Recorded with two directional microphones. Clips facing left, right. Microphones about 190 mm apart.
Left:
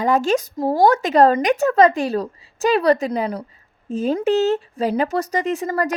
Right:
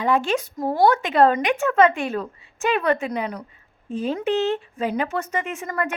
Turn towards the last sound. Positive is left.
turn(degrees=35)  # may be behind; listen again after turning